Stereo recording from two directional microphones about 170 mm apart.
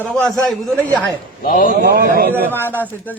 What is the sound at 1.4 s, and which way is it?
Speech, 55° left (ahead or behind).